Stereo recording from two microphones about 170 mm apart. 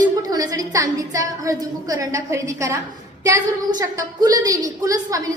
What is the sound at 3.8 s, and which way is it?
A woman's voice, 20° right (ahead or behind).